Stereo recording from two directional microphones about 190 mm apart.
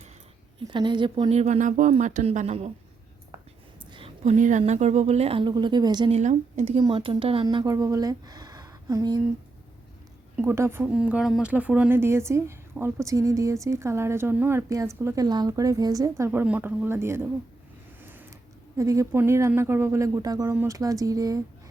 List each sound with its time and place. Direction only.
0.7 s speech: 25° right (ahead or behind)
4.2 s speech: 40° right (ahead or behind); by 6.1 s 25° right (ahead or behind)
6.1 s speech: 35° right (ahead or behind); by 9.2 s 20° right (ahead or behind)
10.3 s speech: 15° right (ahead or behind)
18.0 s a sound: 10° right (ahead or behind)
18.8 s speech: 15° right (ahead or behind)